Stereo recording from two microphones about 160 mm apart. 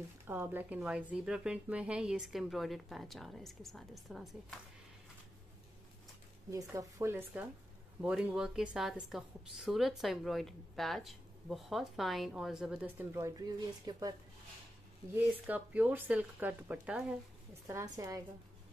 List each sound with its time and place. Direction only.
0.3 s a woman's voice: 10° right (ahead or behind)
6.5 s a woman's voice: 20° right (ahead or behind)
15.1 s speech: 10° right (ahead or behind)
17.6 s a woman's voice: 20° right (ahead or behind)